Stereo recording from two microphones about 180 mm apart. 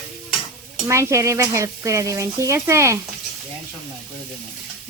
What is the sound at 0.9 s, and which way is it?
Speech, 15° right (ahead or behind).